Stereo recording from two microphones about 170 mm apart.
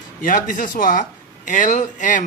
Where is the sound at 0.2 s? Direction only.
50° left (ahead or behind).